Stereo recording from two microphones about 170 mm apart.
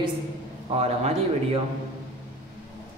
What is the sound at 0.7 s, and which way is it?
Speech, 40° right (ahead or behind).